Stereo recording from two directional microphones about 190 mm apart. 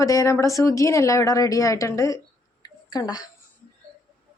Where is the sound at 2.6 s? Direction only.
20° left (ahead or behind).